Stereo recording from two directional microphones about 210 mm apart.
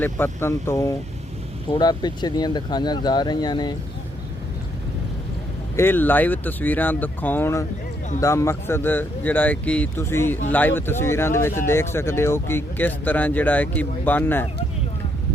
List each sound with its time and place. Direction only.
0.0 s speech: 10° left (ahead or behind)
5.7 s speech: 10° left (ahead or behind)